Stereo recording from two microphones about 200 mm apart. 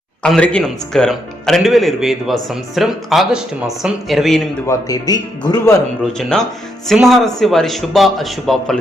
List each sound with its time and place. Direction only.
0.2 s a man's voice: 5° left (ahead or behind)
4.6 s speech: 15° left (ahead or behind)
6.1 s a man's voice: centre (ahead or behind)